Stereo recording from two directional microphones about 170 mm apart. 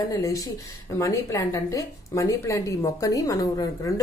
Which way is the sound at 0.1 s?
20° left (ahead or behind).